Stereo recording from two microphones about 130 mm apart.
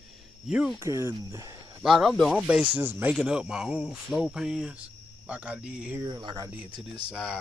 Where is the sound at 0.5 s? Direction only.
5° right (ahead or behind).